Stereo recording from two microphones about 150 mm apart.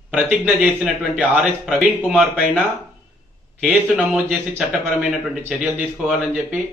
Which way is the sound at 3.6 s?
5° right (ahead or behind).